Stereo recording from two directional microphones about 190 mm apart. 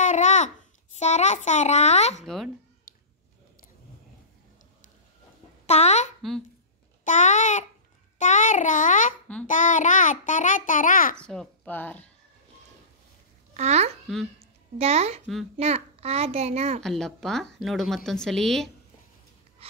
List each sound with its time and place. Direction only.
0.0 s a sound: 40° left (ahead or behind)
0.9 s a child's voice: 35° left (ahead or behind)
2.2 s a woman's voice: centre (ahead or behind)
5.7 s a sound: 35° left (ahead or behind)
7.1 s a child's voice: 40° left (ahead or behind)
11.1 s speech: 5° left (ahead or behind)
13.6 s a child's voice: 35° right (ahead or behind)
16.8 s a woman's voice: centre (ahead or behind)